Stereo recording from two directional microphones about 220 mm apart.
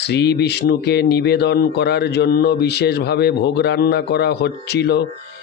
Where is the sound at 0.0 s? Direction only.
50° left (ahead or behind).